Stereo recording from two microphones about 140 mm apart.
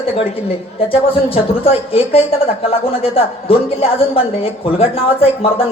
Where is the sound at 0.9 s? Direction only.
40° left (ahead or behind).